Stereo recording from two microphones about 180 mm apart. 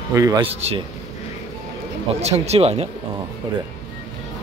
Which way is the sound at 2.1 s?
35° right (ahead or behind).